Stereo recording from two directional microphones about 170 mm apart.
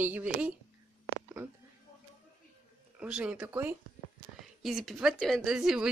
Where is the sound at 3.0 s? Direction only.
5° right (ahead or behind).